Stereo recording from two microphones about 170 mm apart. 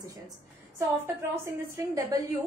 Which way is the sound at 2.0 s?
20° right (ahead or behind).